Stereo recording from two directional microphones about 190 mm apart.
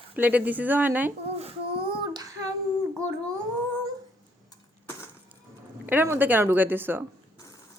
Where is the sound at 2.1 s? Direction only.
20° right (ahead or behind).